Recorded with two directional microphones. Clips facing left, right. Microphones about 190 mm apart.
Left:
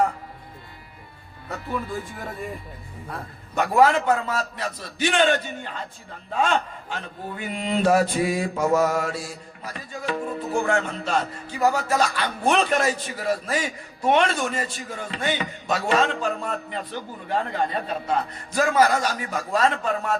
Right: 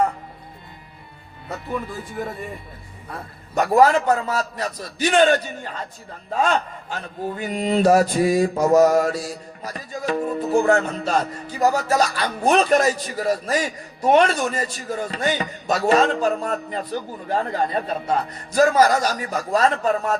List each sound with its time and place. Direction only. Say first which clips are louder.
3.5 s mantra: right 3 dB; 40° right (ahead or behind)